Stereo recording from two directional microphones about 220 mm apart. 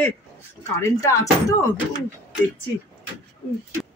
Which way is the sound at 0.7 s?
10° left (ahead or behind).